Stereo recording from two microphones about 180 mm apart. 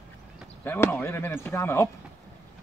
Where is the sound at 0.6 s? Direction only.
10° left (ahead or behind).